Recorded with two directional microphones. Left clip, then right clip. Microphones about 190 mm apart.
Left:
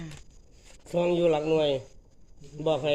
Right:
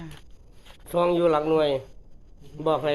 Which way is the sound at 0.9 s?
45° left (ahead or behind).